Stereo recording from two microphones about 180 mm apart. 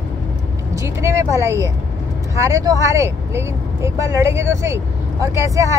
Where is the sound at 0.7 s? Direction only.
15° right (ahead or behind).